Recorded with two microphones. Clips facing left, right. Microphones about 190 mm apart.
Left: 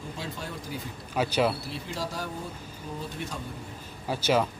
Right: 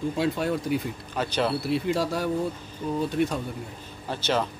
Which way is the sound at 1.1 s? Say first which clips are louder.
Left 1 dB; 10° left (ahead or behind).